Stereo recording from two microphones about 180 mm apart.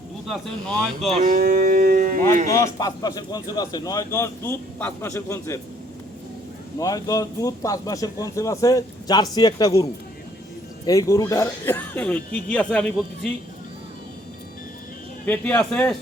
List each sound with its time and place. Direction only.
0.3 s speech: centre (ahead or behind)
1.2 s a sound: 50° right (ahead or behind)
1.6 s speech: 55° right (ahead or behind)
2.5 s a man's voice: 15° left (ahead or behind)
6.7 s a man's voice: 20° left (ahead or behind)
15.3 s speech: 10° left (ahead or behind)